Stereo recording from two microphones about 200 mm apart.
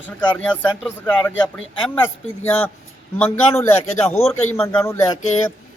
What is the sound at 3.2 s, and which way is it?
Speech, 15° left (ahead or behind).